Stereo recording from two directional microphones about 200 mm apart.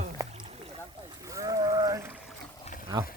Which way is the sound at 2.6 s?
40° left (ahead or behind).